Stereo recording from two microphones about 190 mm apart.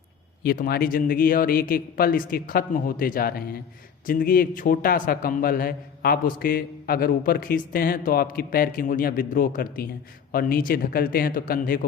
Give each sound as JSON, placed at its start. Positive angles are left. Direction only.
{"t": 0.4, "sound": "a man's voice", "side_deg": 50}